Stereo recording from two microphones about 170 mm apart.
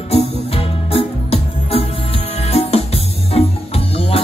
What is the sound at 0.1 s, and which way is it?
Music, 35° left (ahead or behind).